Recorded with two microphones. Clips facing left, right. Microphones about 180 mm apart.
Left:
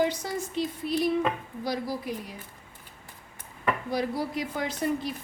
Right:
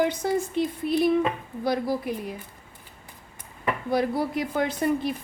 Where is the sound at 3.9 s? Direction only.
55° right (ahead or behind).